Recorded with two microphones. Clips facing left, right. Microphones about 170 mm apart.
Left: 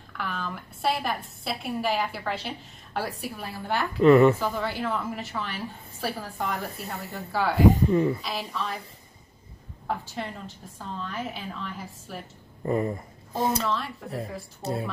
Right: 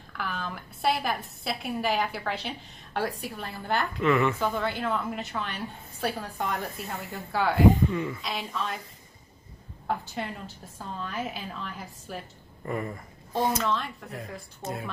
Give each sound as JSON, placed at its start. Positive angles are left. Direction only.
{"t": 0.2, "sound": "a woman's voice", "side_deg": 0}
{"t": 4.0, "sound": "speech", "side_deg": 40}
{"t": 4.4, "sound": "a woman's voice", "side_deg": 5}
{"t": 6.6, "sound": "speech", "side_deg": 35}
{"t": 7.1, "sound": "a woman's voice", "side_deg": 0}
{"t": 7.7, "sound": "speech", "side_deg": 35}
{"t": 8.2, "sound": "a woman's voice", "side_deg": 0}
{"t": 9.8, "sound": "a woman's voice", "side_deg": 0}
{"t": 12.6, "sound": "speech", "side_deg": 30}
{"t": 14.0, "sound": "a woman's voice", "side_deg": 0}
{"t": 14.6, "sound": "speech", "side_deg": 30}